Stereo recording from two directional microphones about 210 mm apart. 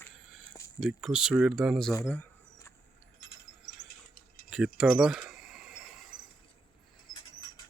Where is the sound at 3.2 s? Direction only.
60° left (ahead or behind).